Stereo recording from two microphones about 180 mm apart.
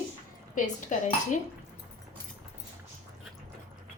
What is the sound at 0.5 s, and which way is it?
Speech, 45° left (ahead or behind).